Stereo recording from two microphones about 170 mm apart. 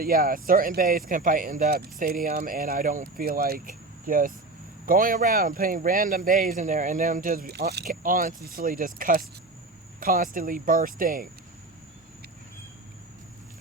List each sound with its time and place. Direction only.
0.0 s speech: 55° right (ahead or behind)